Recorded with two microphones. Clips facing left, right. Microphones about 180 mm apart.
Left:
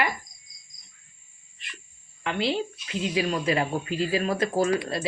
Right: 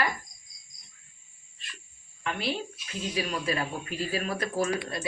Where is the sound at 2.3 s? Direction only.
25° left (ahead or behind).